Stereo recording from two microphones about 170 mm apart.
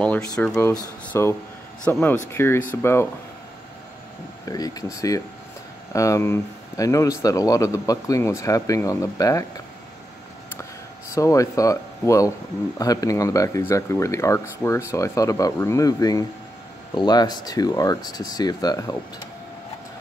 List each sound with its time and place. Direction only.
0.0 s speech: 5° left (ahead or behind)
4.5 s speech: 20° left (ahead or behind)
11.1 s speech: 20° left (ahead or behind)